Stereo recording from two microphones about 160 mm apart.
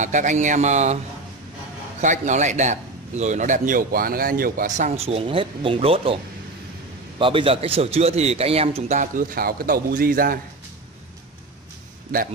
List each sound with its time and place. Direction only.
0.0 s a man's voice: 50° right (ahead or behind)
2.0 s a man's voice: 50° right (ahead or behind)
7.2 s a man's voice: 35° right (ahead or behind); by 10.4 s 70° right (ahead or behind)